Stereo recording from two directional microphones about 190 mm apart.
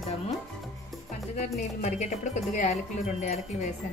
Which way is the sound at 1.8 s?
35° left (ahead or behind).